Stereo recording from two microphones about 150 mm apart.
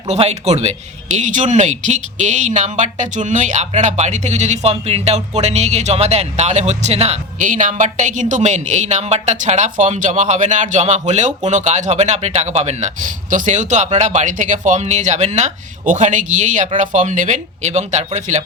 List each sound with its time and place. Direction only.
0.1 s speech: 45° right (ahead or behind)